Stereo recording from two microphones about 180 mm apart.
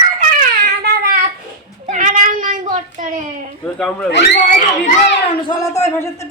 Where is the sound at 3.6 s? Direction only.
5° left (ahead or behind).